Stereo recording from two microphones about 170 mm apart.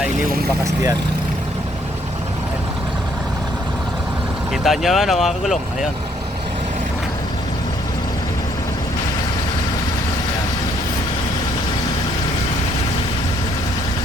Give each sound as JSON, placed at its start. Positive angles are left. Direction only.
{"t": 0.6, "sound": "speech", "side_deg": -20}
{"t": 4.6, "sound": "speech", "side_deg": 0}